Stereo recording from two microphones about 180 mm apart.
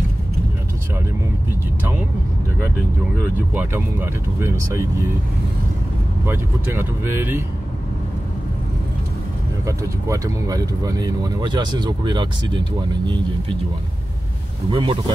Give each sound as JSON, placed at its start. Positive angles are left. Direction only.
{"t": 3.5, "sound": "speech", "side_deg": -10}
{"t": 6.2, "sound": "speech", "side_deg": -15}
{"t": 9.7, "sound": "speech", "side_deg": -15}
{"t": 14.7, "sound": "speech", "side_deg": -30}